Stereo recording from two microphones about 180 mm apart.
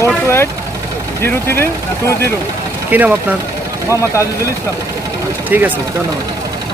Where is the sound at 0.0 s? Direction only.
15° left (ahead or behind).